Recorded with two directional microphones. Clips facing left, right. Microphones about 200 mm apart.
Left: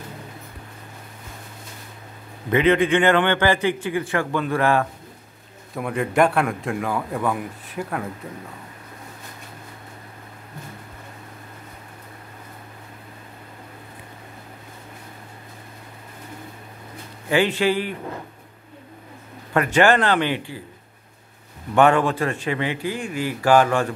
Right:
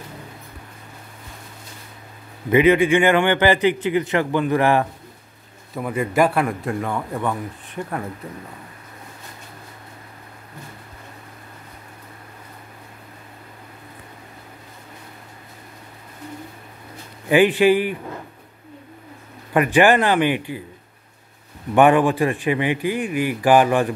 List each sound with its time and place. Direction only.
2.5 s a man's voice: 10° right (ahead or behind)
5.8 s speech: centre (ahead or behind)
17.3 s a man's voice: 15° right (ahead or behind)
19.5 s a man's voice: 15° right (ahead or behind)
21.7 s a man's voice: 15° right (ahead or behind)